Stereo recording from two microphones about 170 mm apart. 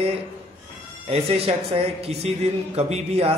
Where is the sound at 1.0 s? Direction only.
35° right (ahead or behind).